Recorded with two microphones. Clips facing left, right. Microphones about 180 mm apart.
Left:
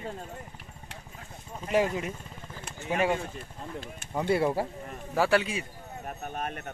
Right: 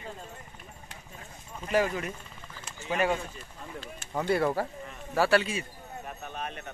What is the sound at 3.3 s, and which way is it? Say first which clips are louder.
Speech: left 3 dB; 55° left (ahead or behind).